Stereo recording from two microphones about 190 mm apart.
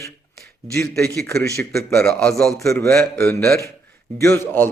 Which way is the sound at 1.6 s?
15° left (ahead or behind).